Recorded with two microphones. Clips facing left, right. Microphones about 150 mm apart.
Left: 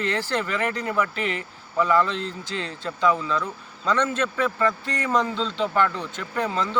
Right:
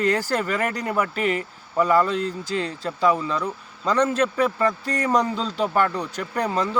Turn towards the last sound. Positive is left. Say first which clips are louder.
# right 2 dB
turn(degrees=-40)  # may be behind; listen again after turning